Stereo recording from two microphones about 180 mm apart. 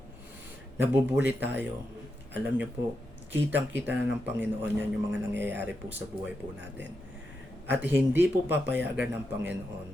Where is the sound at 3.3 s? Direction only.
10° right (ahead or behind).